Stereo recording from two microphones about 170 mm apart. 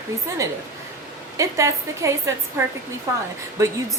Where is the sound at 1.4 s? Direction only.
20° right (ahead or behind).